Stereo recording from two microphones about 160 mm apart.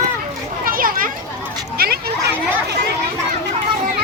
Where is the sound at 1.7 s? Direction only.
70° right (ahead or behind).